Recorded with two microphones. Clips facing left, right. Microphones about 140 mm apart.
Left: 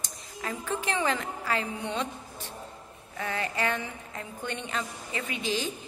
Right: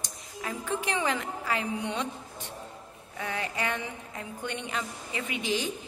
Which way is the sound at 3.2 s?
10° right (ahead or behind).